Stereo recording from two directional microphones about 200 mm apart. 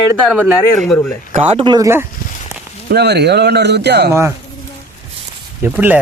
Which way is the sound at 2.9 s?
55° right (ahead or behind).